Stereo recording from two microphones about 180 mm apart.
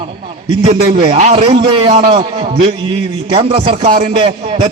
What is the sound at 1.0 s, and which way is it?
A man's voice, 40° right (ahead or behind).